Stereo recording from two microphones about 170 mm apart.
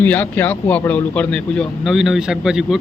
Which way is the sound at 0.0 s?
10° left (ahead or behind).